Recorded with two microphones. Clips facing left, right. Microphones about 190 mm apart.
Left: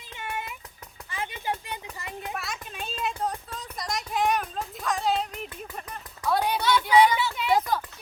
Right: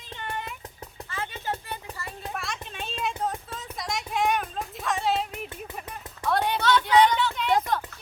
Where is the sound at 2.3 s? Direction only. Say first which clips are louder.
Right 1 dB; centre (ahead or behind).